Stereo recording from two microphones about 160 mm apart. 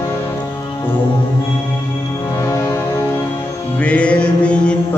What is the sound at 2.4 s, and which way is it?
Music, 20° left (ahead or behind).